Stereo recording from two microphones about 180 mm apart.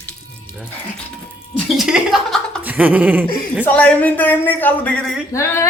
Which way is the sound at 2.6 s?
10° right (ahead or behind).